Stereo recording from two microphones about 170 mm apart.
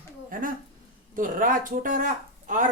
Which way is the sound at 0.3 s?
55° right (ahead or behind).